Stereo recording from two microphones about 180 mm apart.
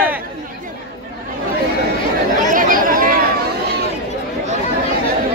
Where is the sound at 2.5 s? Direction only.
50° right (ahead or behind).